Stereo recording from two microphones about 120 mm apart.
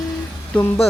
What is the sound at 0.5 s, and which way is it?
Speech, 5° left (ahead or behind).